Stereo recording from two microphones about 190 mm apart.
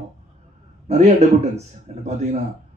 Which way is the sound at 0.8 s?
35° right (ahead or behind).